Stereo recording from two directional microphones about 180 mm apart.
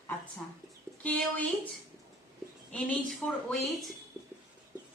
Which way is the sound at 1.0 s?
5° left (ahead or behind).